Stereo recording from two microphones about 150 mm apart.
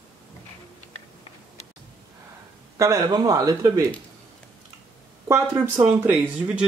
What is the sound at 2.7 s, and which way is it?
Speech, 20° right (ahead or behind).